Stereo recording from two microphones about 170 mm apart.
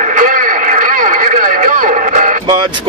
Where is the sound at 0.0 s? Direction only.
50° right (ahead or behind).